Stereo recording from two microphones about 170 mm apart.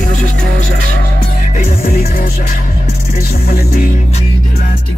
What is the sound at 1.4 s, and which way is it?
Music, 50° left (ahead or behind).